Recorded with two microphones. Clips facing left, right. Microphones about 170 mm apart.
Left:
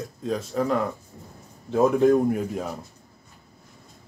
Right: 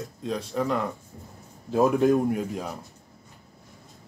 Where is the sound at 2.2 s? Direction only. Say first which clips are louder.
Left 2 dB; centre (ahead or behind).